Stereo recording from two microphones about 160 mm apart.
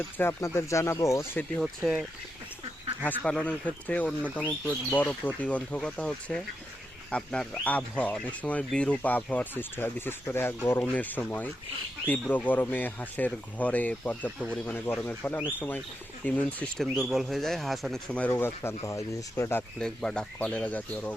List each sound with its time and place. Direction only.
0.2 s speech: 15° left (ahead or behind)
1.6 s speech: 5° right (ahead or behind)
3.0 s speech: 10° left (ahead or behind)
19.8 s speech: 5° left (ahead or behind)